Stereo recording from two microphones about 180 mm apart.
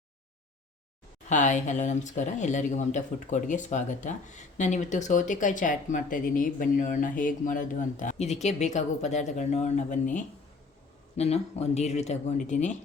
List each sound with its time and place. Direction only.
1.3 s speech: 45° left (ahead or behind)